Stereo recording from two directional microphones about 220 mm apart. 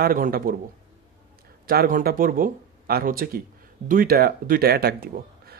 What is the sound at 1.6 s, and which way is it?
Speech, 40° right (ahead or behind).